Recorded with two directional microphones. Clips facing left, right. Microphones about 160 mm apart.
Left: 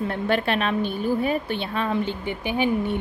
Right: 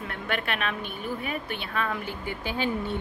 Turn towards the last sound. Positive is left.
turn(degrees=15)  # may be behind; listen again after turning